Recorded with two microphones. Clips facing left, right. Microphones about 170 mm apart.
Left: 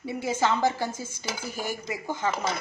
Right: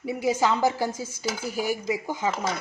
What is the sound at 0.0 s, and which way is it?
Speech, 15° right (ahead or behind).